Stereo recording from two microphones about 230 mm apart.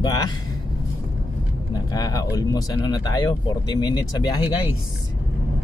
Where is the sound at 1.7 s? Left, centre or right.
Centre.